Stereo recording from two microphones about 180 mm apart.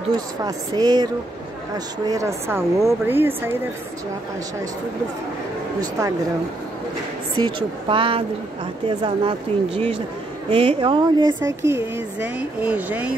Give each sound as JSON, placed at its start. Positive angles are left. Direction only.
{"t": 0.1, "sound": "speech", "side_deg": -20}
{"t": 5.8, "sound": "speech", "side_deg": -20}
{"t": 7.4, "sound": "speech", "side_deg": -30}